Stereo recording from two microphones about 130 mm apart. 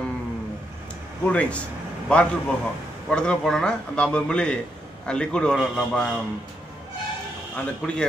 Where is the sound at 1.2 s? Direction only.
10° left (ahead or behind).